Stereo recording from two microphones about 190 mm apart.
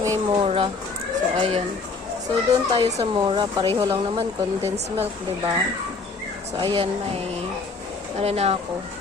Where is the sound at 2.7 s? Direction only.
30° right (ahead or behind).